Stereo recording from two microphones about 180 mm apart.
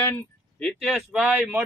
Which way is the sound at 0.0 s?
10° left (ahead or behind).